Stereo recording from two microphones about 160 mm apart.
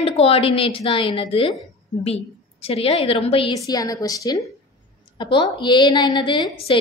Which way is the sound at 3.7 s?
20° left (ahead or behind).